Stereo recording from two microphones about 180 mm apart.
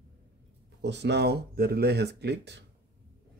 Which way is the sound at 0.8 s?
70° right (ahead or behind).